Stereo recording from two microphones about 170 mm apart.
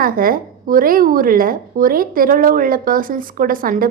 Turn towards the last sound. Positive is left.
turn(degrees=-55)  # may be behind; listen again after turning